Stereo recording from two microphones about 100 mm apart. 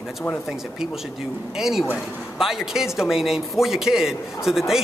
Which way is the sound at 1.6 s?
5° right (ahead or behind).